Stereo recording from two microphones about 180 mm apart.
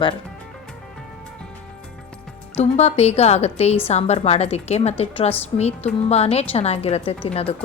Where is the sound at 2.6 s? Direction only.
35° left (ahead or behind).